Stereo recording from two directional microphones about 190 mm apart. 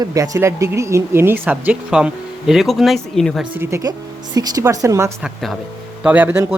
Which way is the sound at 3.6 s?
15° right (ahead or behind).